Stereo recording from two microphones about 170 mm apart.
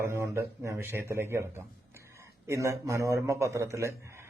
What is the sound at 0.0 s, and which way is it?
A man's voice, 15° right (ahead or behind).